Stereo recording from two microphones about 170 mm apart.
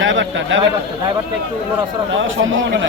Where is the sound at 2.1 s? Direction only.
90° right.